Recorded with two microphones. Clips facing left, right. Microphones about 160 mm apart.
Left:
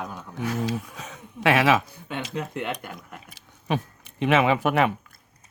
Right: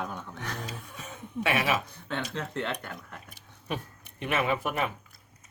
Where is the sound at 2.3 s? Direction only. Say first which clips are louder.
Left 3 dB; 15° left (ahead or behind).